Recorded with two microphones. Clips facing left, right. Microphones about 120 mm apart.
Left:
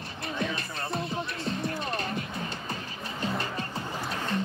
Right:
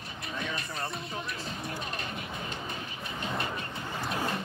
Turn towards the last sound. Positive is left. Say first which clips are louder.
# left 1 dB
turn(degrees=-5)  # may be behind; listen again after turning